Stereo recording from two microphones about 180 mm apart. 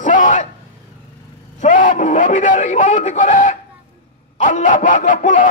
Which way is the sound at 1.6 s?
45° left (ahead or behind).